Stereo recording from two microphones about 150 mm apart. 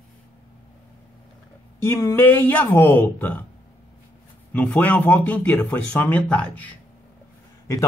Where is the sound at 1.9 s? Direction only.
20° left (ahead or behind).